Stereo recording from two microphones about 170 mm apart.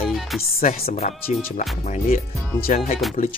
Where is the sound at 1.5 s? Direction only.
45° left (ahead or behind).